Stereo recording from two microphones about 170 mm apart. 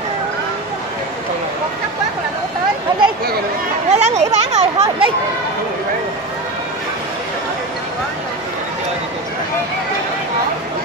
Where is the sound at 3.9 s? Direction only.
40° right (ahead or behind).